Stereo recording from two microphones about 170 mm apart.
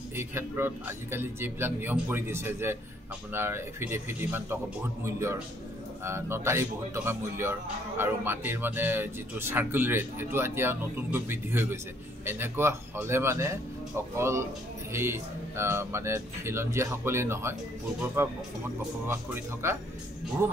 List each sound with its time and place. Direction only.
0.1 s speech: 15° right (ahead or behind)
19.6 s speech: 15° right (ahead or behind)